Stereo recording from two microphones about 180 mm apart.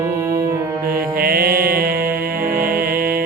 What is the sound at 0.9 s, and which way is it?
Mantra, 55° right (ahead or behind).